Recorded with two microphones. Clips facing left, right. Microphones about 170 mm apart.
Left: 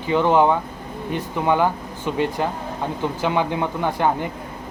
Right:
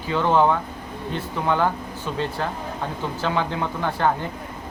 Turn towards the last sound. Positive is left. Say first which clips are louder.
# left 2 dB
turn(degrees=15)  # may be behind; listen again after turning